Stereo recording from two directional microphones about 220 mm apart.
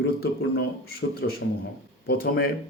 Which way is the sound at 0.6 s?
45° left (ahead or behind).